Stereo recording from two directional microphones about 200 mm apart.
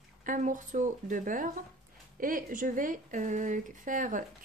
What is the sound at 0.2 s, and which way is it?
Speech, 40° right (ahead or behind).